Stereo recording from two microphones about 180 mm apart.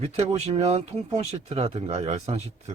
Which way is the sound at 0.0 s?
35° right (ahead or behind).